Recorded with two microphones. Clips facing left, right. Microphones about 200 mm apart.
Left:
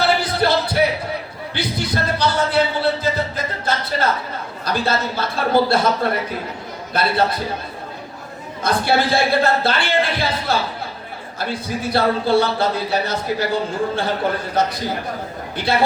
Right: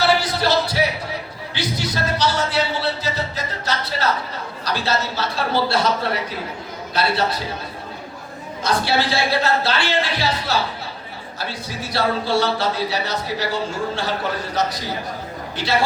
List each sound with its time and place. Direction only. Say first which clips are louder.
0.2 s music: left 1 dB; 55° left (ahead or behind)
1.5 s a sound: left 2 dB; 55° left (ahead or behind)
4.6 s speech: left 2 dB; 50° left (ahead or behind)
8.6 s a man's voice: left 2 dB; 55° left (ahead or behind)